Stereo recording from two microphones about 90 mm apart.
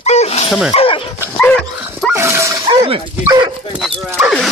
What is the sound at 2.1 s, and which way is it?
Dog, 30° right (ahead or behind).